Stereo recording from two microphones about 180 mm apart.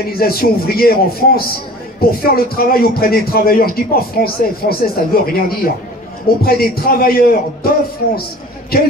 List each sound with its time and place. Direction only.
0.0 s a man's voice: 55° left (ahead or behind)